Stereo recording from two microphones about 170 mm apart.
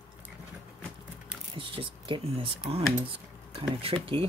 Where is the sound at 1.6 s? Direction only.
30° right (ahead or behind).